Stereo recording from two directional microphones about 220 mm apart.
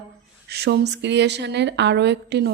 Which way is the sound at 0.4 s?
45° right (ahead or behind).